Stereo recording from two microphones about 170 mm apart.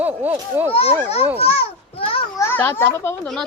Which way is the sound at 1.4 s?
35° left (ahead or behind).